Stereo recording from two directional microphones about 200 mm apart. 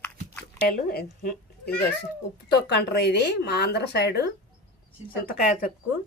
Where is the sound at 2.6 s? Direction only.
55° left (ahead or behind).